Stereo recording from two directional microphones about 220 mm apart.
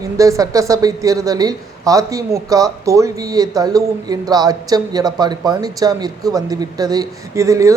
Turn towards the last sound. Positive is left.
turn(degrees=-15)  # may be behind; listen again after turning